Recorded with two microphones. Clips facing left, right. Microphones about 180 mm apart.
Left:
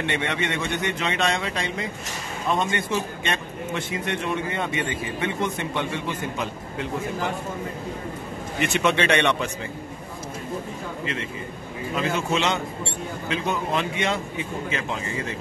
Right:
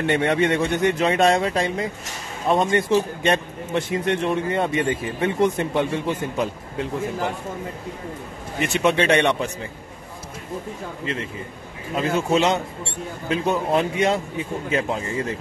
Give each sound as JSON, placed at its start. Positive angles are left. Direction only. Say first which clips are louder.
{"t": 0.0, "sound": "a man's voice", "louder": "right 7 dB", "side_deg": -40}
{"t": 8.5, "sound": "a man's voice", "louder": "right 2 dB", "side_deg": -30}
{"t": 11.9, "sound": "a man's voice", "louder": "right 4 dB", "side_deg": -40}